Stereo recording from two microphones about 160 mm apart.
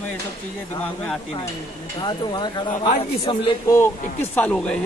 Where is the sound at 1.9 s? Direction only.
30° left (ahead or behind).